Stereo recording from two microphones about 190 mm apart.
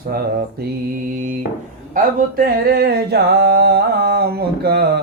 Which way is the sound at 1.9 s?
50° right (ahead or behind).